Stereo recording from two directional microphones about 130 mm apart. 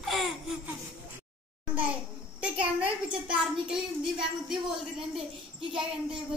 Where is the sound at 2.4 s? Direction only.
10° right (ahead or behind).